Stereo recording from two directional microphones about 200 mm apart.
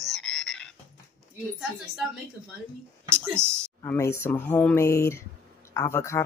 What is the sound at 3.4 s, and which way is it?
Speech, 10° right (ahead or behind).